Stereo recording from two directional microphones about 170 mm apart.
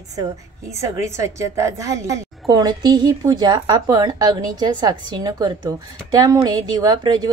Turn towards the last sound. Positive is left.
turn(degrees=-25)  # may be behind; listen again after turning